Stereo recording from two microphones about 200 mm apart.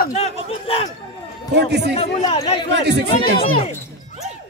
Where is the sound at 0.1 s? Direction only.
30° left (ahead or behind).